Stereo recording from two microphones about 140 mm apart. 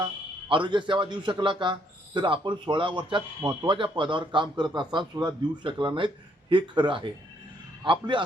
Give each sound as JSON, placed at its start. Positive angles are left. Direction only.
{"t": 0.0, "sound": "a man's voice", "side_deg": -35}